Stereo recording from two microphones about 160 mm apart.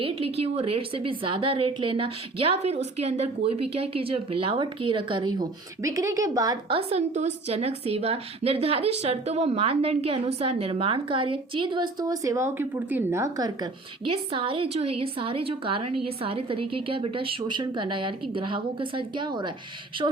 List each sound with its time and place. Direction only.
0.0 s a woman's voice: 35° right (ahead or behind)
6.7 s a woman's voice: 40° right (ahead or behind)